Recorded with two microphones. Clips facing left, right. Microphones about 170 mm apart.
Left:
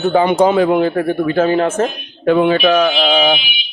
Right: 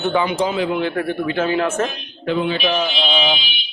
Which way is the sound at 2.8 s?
90° left.